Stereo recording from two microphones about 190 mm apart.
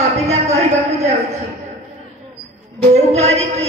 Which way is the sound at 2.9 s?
35° right (ahead or behind).